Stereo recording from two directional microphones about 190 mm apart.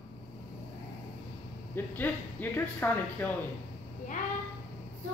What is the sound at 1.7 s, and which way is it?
Speech, 10° left (ahead or behind).